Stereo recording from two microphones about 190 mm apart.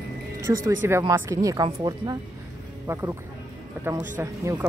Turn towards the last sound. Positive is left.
turn(degrees=-15)  # may be behind; listen again after turning